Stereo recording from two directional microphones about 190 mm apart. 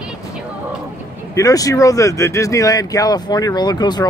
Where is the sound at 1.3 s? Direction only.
20° left (ahead or behind).